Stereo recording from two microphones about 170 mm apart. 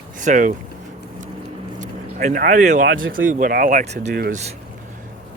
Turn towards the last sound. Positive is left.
turn(degrees=-40)  # may be behind; listen again after turning